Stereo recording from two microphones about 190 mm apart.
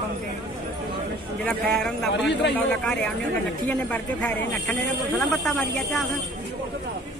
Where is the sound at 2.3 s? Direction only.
65° left (ahead or behind).